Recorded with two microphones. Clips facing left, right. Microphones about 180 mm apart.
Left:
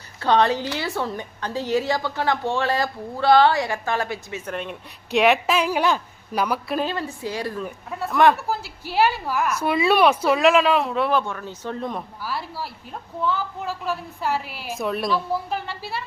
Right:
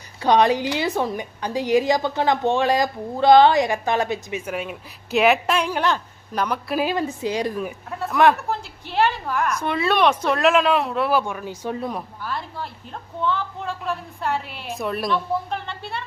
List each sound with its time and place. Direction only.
0.2 s a woman's voice: 15° right (ahead or behind); by 6.7 s 5° left (ahead or behind)
6.7 s a woman's voice: 15° right (ahead or behind)
7.9 s speech: centre (ahead or behind)
11.2 s speech: 10° right (ahead or behind); by 16.0 s 5° left (ahead or behind)